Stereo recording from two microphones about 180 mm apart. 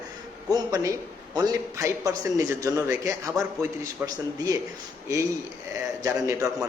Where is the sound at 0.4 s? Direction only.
20° right (ahead or behind).